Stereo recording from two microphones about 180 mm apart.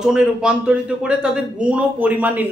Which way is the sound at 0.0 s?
5° right (ahead or behind).